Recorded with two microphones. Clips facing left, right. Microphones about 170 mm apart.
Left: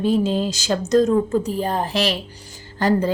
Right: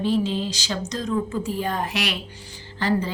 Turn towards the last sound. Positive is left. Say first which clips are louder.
# left 5 dB
turn(degrees=45)  # may be behind; listen again after turning